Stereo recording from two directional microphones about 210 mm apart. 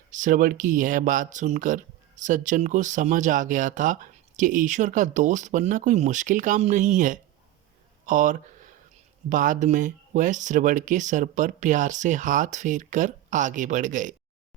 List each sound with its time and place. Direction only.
0.1 s speech: 40° right (ahead or behind)
8.0 s a sound: 40° right (ahead or behind)
9.3 s speech: 35° right (ahead or behind)